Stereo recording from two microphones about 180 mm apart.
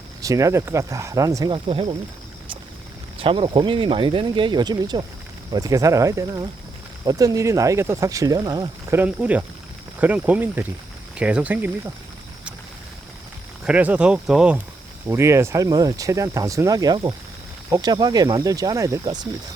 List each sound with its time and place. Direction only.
0.2 s speech: 20° right (ahead or behind)
1.5 s speech: 30° right (ahead or behind)
3.2 s speech: 30° right (ahead or behind)
9.0 s speech: 10° right (ahead or behind)
13.7 s speech: 5° right (ahead or behind)
15.0 s speech: 15° right (ahead or behind)